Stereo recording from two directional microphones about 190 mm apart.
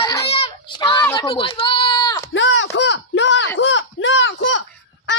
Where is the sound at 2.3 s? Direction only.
80° left.